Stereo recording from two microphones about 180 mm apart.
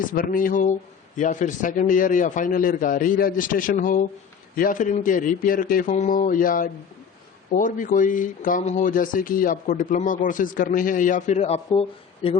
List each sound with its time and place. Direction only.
0.1 s speech: 50° left (ahead or behind); by 12.4 s 35° left (ahead or behind)